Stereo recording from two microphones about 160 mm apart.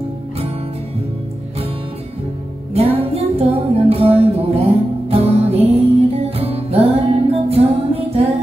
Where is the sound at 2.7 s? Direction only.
40° right (ahead or behind).